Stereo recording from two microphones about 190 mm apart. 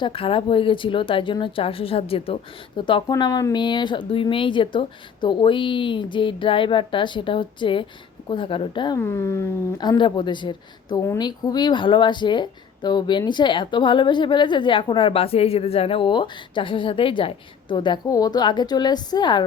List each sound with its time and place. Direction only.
0.0 s speech: 30° left (ahead or behind)
9.0 s speech: 15° left (ahead or behind)